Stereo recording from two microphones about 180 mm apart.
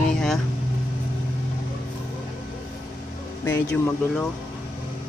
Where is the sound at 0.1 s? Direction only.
5° left (ahead or behind).